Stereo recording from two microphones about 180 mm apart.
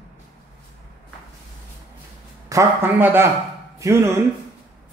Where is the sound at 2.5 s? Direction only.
10° right (ahead or behind).